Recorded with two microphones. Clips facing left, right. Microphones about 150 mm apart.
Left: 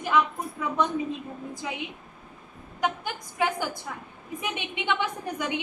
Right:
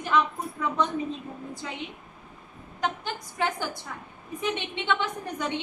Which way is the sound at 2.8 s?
10° left (ahead or behind).